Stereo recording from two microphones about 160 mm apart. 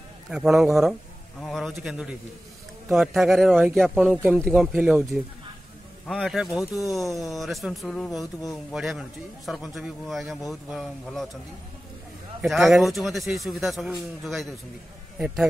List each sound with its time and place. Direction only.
0.3 s a man's voice: centre (ahead or behind)
12.4 s a man's voice: centre (ahead or behind)